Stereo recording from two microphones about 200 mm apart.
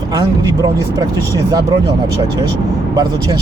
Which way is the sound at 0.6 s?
15° right (ahead or behind).